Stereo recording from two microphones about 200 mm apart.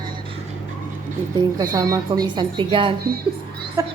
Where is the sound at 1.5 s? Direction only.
15° right (ahead or behind).